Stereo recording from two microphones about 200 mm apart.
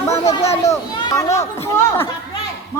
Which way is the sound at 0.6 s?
15° left (ahead or behind).